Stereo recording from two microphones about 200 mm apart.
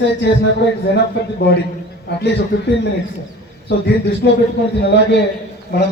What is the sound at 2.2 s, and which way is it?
Speech, 60° left (ahead or behind).